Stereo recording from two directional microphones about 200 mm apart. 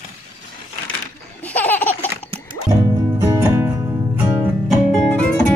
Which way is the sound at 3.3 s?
15° right (ahead or behind).